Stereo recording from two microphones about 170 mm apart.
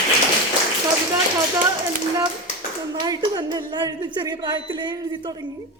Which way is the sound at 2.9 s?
25° right (ahead or behind).